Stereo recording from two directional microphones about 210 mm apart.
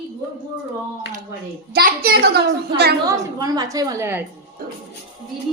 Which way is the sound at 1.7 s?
45° right (ahead or behind).